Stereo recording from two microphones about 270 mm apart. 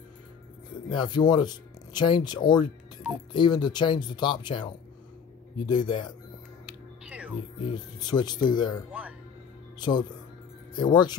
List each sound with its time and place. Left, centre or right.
0.8 s speech: centre
7.1 s music: centre
7.6 s speech: centre
9.0 s speech: centre
9.8 s speech: centre